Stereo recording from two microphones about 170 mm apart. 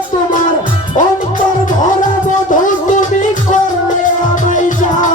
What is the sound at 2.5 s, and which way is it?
Music, 50° left (ahead or behind).